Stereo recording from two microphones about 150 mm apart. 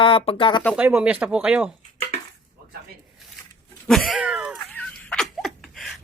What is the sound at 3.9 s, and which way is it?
Cat, centre (ahead or behind).